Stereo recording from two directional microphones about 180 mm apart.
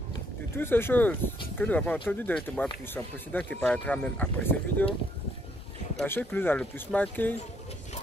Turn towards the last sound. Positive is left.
turn(degrees=10)  # may be behind; listen again after turning